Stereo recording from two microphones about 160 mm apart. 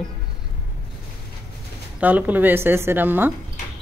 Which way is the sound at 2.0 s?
10° right (ahead or behind).